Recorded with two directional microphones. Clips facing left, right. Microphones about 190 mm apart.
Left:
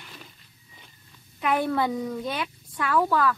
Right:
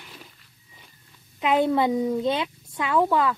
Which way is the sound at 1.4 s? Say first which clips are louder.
Right 4 dB; 20° right (ahead or behind).